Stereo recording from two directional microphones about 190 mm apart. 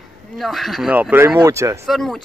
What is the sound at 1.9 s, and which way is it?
Speech, centre (ahead or behind).